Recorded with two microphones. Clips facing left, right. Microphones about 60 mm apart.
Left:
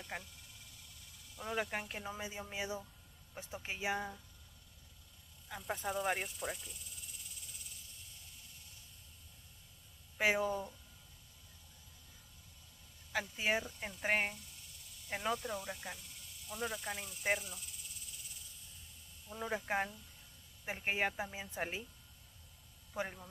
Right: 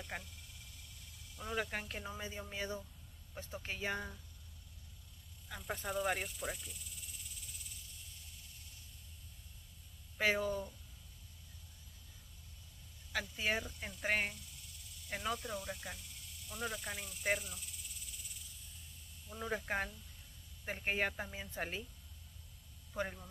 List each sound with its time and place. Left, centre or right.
0.0 s a sound: centre
1.3 s speech: centre
5.5 s speech: centre
10.1 s speech: centre
13.1 s speech: centre
19.2 s speech: centre
22.9 s speech: centre